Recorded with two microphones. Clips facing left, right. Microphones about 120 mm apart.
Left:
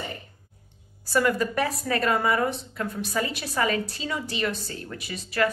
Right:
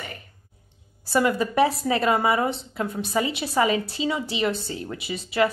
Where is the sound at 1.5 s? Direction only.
25° right (ahead or behind).